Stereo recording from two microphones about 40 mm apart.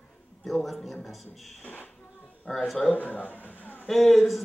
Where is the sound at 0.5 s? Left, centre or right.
Centre.